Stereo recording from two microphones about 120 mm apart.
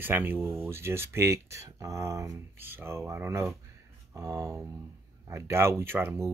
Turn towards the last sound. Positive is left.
turn(degrees=-20)  # may be behind; listen again after turning